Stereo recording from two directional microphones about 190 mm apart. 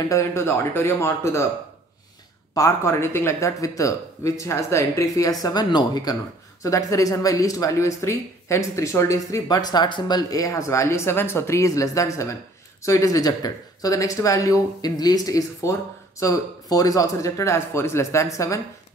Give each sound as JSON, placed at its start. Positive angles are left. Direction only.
{"t": 0.1, "sound": "speech", "side_deg": 15}
{"t": 2.5, "sound": "speech", "side_deg": 15}